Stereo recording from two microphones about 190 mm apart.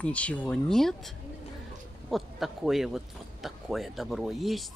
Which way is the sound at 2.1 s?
Centre (ahead or behind).